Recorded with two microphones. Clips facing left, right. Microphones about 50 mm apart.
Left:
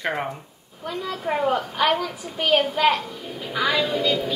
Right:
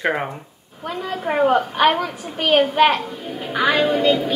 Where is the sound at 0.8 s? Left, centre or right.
Right.